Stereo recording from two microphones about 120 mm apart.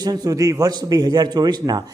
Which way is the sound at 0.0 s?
35° right (ahead or behind).